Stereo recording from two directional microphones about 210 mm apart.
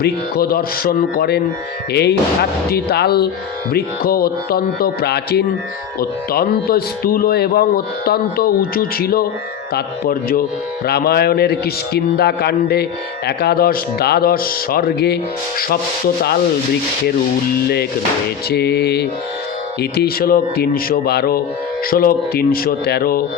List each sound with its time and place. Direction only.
0.0 s speech: 45° left (ahead or behind)
18.4 s speech: 50° left (ahead or behind)